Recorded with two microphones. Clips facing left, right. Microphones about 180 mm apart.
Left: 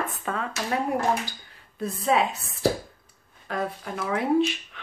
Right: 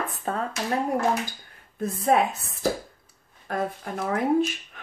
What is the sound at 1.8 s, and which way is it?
Speech, 50° right (ahead or behind).